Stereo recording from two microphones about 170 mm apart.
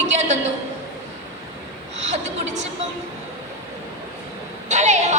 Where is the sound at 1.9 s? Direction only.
40° right (ahead or behind).